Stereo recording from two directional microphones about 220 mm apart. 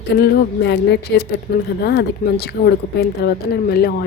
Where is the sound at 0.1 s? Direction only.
45° left (ahead or behind).